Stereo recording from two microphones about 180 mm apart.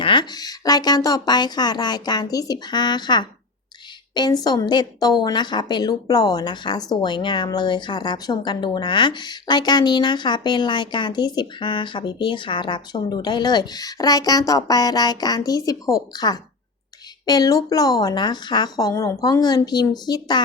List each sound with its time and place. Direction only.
0.0 s a woman's voice: 25° left (ahead or behind)